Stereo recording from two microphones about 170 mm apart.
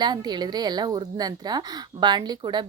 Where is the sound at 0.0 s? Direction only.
25° right (ahead or behind).